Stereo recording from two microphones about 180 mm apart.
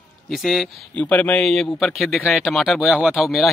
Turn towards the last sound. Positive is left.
turn(degrees=0)  # may be behind; listen again after turning